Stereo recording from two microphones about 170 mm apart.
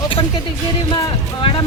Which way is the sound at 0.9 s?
25° left (ahead or behind).